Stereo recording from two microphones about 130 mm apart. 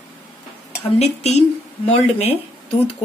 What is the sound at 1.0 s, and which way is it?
Speech, 55° left (ahead or behind).